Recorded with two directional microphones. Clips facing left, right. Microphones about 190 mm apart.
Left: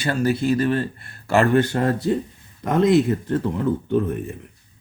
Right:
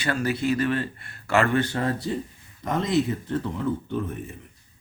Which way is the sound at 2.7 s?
55° left (ahead or behind).